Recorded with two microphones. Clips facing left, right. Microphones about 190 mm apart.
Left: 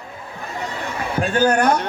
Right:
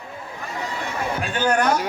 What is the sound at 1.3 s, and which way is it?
Speech, 40° left (ahead or behind).